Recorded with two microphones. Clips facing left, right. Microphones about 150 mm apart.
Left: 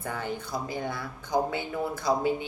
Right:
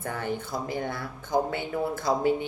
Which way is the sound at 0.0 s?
50° right (ahead or behind).